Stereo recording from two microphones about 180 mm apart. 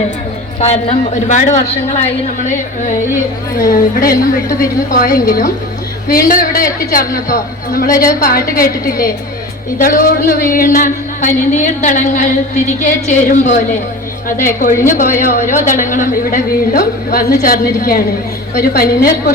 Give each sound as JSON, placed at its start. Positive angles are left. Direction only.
{"t": 0.6, "sound": "a man's voice", "side_deg": 35}
{"t": 3.6, "sound": "speech", "side_deg": 55}
{"t": 7.9, "sound": "a woman's voice", "side_deg": 20}
{"t": 8.5, "sound": "a woman's voice", "side_deg": 55}